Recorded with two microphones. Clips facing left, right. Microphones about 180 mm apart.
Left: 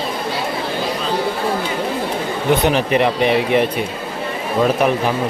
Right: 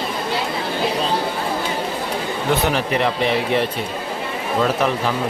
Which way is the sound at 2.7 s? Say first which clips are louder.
Left 4 dB; 20° left (ahead or behind).